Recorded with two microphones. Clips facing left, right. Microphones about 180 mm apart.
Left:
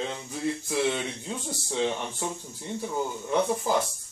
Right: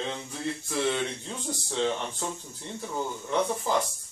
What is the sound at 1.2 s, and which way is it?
Speech, 10° left (ahead or behind).